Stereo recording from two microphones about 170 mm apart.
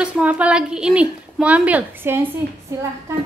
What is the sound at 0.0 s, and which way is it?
A woman's voice, 5° right (ahead or behind).